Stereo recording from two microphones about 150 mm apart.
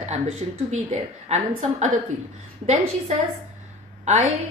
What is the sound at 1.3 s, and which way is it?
A woman's voice, 50° right (ahead or behind).